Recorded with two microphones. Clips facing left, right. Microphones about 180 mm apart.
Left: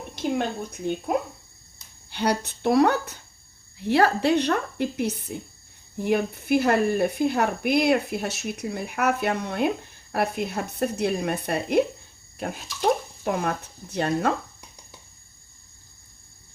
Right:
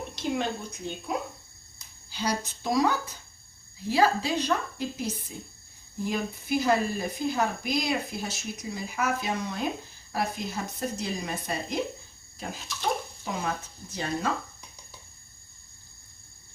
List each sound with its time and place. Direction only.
0.2 s speech: 55° left (ahead or behind)
13.2 s speech: 60° left (ahead or behind)